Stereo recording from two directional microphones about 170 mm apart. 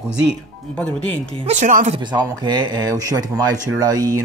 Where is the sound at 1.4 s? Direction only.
45° right (ahead or behind).